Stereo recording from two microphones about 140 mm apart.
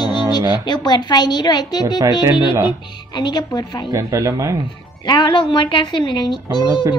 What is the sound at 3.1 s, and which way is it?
Speech, 30° left (ahead or behind).